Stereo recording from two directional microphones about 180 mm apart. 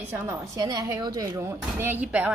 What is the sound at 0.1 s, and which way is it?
Speech, 15° right (ahead or behind).